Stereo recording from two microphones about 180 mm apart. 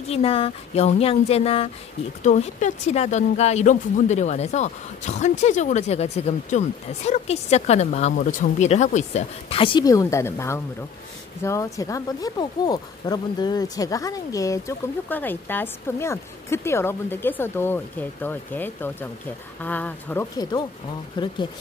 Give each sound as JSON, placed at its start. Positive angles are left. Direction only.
{"t": 0.1, "sound": "speech", "side_deg": 30}
{"t": 21.2, "sound": "speech", "side_deg": 25}